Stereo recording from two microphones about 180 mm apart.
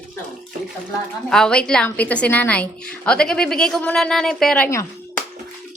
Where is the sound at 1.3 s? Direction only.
5° left (ahead or behind).